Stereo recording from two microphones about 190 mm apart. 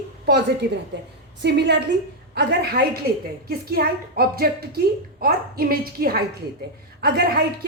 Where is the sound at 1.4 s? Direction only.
65° right (ahead or behind).